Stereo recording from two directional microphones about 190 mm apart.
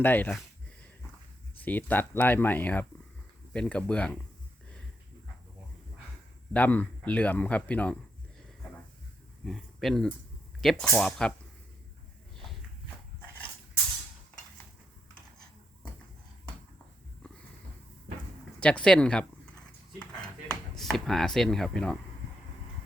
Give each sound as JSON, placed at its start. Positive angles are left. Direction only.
{"t": 0.0, "sound": "speech", "side_deg": 10}
{"t": 1.5, "sound": "speech", "side_deg": 10}
{"t": 6.5, "sound": "speech", "side_deg": 10}
{"t": 9.4, "sound": "speech", "side_deg": 0}
{"t": 18.6, "sound": "speech", "side_deg": 5}
{"t": 20.7, "sound": "speech", "side_deg": 0}